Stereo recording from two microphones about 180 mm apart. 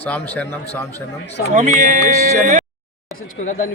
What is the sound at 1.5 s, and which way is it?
Speech, 40° right (ahead or behind).